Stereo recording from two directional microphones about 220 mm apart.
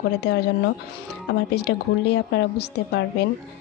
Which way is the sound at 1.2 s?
50° left (ahead or behind).